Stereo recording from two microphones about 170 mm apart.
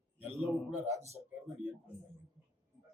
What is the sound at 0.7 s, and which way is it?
Speech, 10° right (ahead or behind).